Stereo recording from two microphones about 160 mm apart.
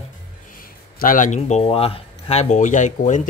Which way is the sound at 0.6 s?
60° left (ahead or behind).